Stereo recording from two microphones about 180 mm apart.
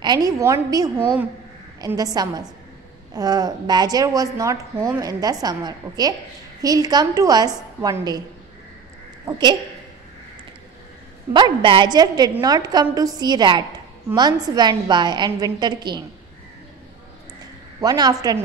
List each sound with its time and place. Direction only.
0.0 s a woman's voice: 20° right (ahead or behind)
9.2 s a woman's voice: 25° right (ahead or behind)
11.3 s a woman's voice: 25° right (ahead or behind)
17.7 s a woman's voice: 20° right (ahead or behind)